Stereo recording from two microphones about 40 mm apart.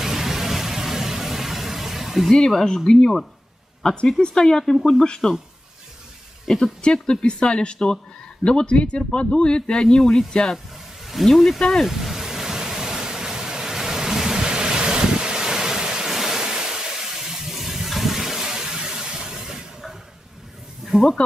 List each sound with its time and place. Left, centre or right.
0.0 s vehicle: centre
2.3 s speech: centre
3.8 s speech: left
6.4 s speech: centre
6.8 s speech: left
11.2 s speech: centre
11.8 s waves: centre
16.1 s a sound: centre
20.8 s snake: centre